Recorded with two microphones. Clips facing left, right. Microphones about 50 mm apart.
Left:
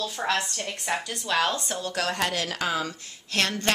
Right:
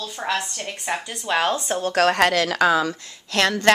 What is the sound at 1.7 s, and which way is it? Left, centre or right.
Speech, right.